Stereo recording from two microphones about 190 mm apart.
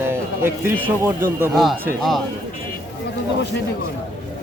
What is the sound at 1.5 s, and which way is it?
Speech, centre (ahead or behind).